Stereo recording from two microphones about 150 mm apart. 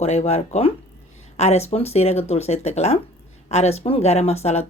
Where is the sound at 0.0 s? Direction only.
45° left (ahead or behind).